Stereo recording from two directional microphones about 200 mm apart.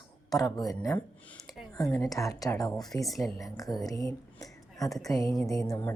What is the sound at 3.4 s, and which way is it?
A woman's voice, 15° left (ahead or behind).